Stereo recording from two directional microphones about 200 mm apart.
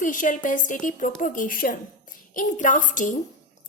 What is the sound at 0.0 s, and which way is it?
A woman's voice, 40° left (ahead or behind).